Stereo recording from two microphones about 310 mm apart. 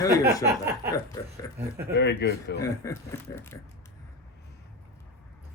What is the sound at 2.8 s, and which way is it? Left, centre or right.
Speech, centre.